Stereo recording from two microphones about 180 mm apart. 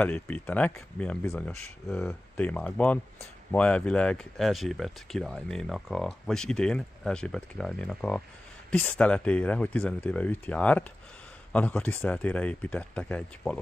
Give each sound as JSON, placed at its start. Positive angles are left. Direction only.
{"t": 0.0, "sound": "speech", "side_deg": 5}